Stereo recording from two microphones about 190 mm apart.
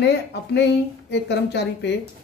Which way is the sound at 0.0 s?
65° left (ahead or behind).